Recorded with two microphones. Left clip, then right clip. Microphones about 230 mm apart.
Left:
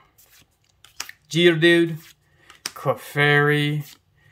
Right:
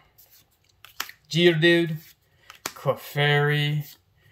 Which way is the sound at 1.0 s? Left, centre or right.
Centre.